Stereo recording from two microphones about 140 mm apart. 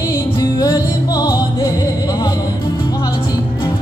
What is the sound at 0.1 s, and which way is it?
Music, 25° left (ahead or behind).